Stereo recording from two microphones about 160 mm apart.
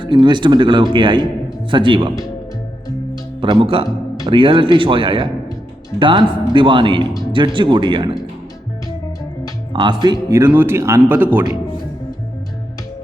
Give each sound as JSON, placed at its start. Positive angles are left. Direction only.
{"t": 0.0, "sound": "speech", "side_deg": -30}
{"t": 3.4, "sound": "speech", "side_deg": -35}
{"t": 9.7, "sound": "speech", "side_deg": -30}